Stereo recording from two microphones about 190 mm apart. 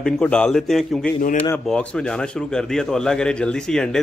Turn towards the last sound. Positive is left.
turn(degrees=5)  # may be behind; listen again after turning